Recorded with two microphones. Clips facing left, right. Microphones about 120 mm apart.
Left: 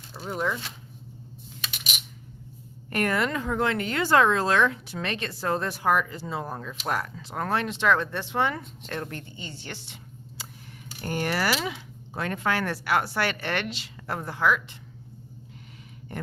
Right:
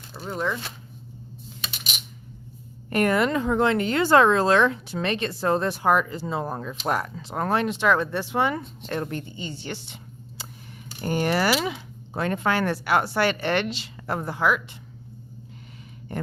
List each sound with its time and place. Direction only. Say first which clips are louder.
0.1 s speech: right 1 dB; 5° left (ahead or behind)
2.9 s speech: right 5 dB; 20° right (ahead or behind)
8.8 s speech: right 5 dB; 25° right (ahead or behind)
14.3 s speech: even; 15° right (ahead or behind)